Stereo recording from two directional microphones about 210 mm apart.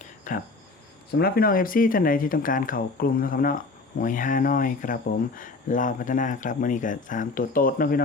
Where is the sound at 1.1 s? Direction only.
45° left (ahead or behind).